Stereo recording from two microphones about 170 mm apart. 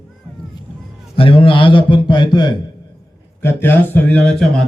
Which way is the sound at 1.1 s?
30° left (ahead or behind).